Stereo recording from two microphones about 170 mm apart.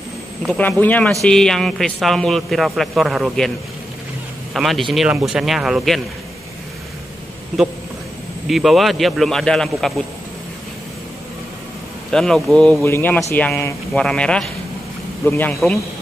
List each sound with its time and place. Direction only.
0.6 s a man's voice: 10° left (ahead or behind)
4.6 s a man's voice: centre (ahead or behind)
8.5 s a man's voice: centre (ahead or behind)
12.1 s speech: 5° left (ahead or behind)